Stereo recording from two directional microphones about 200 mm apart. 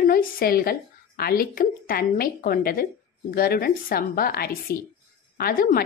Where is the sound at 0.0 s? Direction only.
45° left (ahead or behind).